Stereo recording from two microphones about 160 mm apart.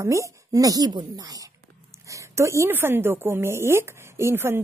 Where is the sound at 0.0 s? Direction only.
20° right (ahead or behind).